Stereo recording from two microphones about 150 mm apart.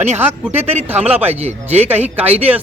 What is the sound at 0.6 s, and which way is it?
Speech, 45° right (ahead or behind).